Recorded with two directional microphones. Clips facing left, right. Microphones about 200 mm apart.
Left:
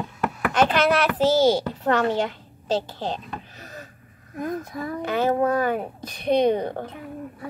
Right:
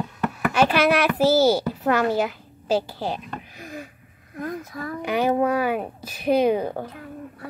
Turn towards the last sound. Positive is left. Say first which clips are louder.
# even
turn(degrees=-5)  # may be behind; listen again after turning